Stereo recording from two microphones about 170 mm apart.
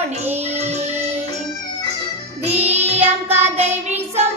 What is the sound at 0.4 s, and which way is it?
Music, 40° right (ahead or behind).